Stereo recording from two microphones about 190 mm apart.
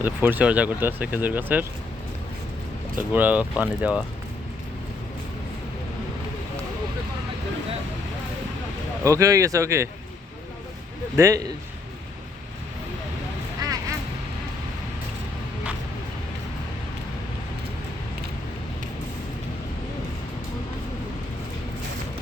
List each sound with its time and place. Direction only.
0.0 s speech: 10° right (ahead or behind)
3.0 s speech: 10° right (ahead or behind)
9.0 s speech: 15° right (ahead or behind)
11.2 s speech: 15° right (ahead or behind)
13.6 s quack: 20° right (ahead or behind)